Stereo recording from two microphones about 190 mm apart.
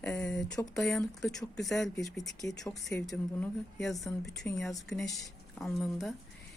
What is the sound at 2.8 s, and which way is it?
Speech, centre (ahead or behind).